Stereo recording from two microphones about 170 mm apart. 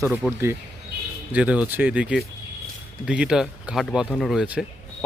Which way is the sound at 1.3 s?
10° right (ahead or behind).